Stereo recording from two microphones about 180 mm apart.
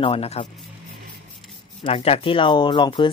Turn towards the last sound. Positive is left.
turn(degrees=25)  # may be behind; listen again after turning